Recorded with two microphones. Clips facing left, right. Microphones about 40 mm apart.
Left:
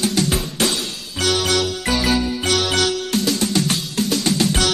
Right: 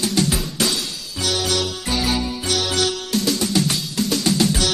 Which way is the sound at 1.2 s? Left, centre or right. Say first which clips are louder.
Left 4 dB; left.